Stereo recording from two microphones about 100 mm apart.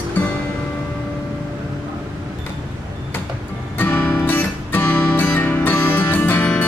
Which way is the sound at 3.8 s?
15° left (ahead or behind).